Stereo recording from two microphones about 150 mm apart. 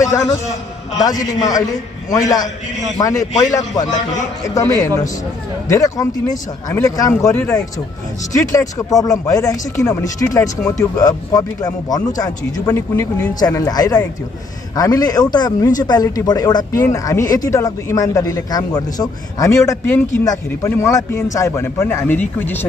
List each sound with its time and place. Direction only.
0.0 s a man's voice: 20° left (ahead or behind)